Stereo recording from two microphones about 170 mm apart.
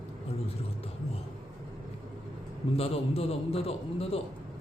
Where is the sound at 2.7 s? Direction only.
35° left (ahead or behind).